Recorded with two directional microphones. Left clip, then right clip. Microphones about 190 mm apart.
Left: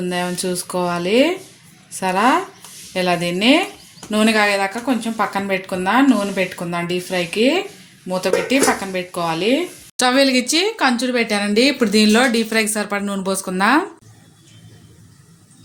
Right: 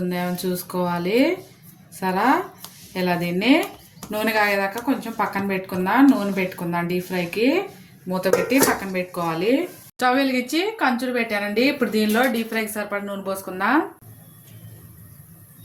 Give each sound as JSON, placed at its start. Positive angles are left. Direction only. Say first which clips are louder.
{"t": 0.1, "sound": "speech", "louder": "left 4 dB", "side_deg": 45}
{"t": 10.0, "sound": "speech", "louder": "left 5 dB", "side_deg": 55}